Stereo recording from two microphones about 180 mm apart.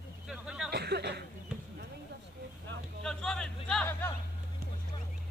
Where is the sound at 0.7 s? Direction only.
65° right (ahead or behind).